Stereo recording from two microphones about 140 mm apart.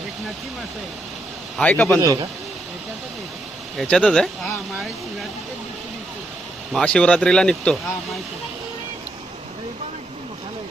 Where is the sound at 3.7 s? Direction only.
5° left (ahead or behind).